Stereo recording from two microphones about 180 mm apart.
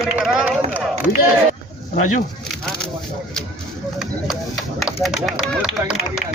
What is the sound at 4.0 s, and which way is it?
Speech, centre (ahead or behind).